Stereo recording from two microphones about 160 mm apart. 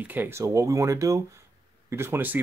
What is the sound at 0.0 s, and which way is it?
Speech, 10° right (ahead or behind).